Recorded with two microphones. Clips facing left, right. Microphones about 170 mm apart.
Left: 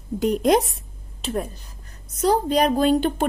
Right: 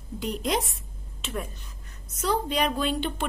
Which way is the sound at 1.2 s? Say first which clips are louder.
Left 7 dB; 35° left (ahead or behind).